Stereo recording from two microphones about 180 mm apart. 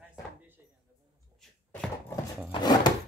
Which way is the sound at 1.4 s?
5° left (ahead or behind).